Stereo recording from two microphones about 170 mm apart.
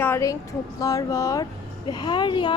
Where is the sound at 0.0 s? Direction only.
15° left (ahead or behind).